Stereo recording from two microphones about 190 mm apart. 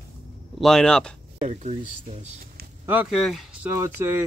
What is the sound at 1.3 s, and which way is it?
Speech, 40° right (ahead or behind).